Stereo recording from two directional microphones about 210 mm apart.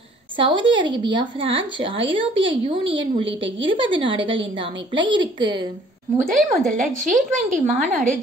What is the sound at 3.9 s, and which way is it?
Speech, 25° right (ahead or behind).